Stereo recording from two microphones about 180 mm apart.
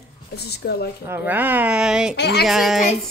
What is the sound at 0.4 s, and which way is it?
Speech, 65° left (ahead or behind).